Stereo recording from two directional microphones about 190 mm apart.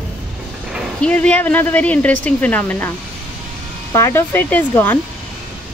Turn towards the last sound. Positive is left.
turn(degrees=10)  # may be behind; listen again after turning